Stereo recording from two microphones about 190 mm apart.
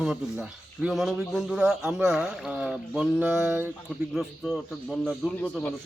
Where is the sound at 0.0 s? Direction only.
5° right (ahead or behind).